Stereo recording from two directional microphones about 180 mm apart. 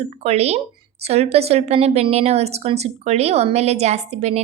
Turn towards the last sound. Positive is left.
turn(degrees=-35)  # may be behind; listen again after turning